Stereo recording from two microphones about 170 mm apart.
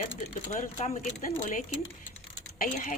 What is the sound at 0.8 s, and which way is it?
Speech, 40° left (ahead or behind).